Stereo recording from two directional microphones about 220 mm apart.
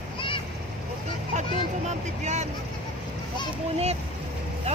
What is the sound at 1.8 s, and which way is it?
Vehicle, 30° right (ahead or behind).